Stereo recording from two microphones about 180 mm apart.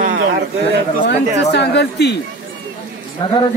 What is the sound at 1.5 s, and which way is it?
Speech, 70° left (ahead or behind).